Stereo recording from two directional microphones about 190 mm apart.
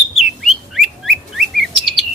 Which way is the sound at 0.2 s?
Centre (ahead or behind).